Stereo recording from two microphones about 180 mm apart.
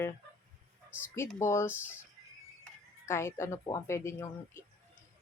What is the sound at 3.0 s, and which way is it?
Speech, 15° left (ahead or behind).